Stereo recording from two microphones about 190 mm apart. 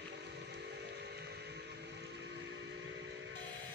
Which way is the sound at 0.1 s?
60° right (ahead or behind).